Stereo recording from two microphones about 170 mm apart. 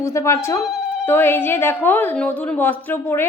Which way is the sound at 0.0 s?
15° left (ahead or behind).